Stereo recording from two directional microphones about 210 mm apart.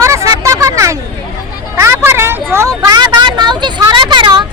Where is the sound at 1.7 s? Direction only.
10° right (ahead or behind).